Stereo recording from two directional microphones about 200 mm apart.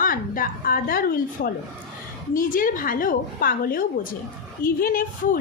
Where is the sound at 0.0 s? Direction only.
45° left (ahead or behind).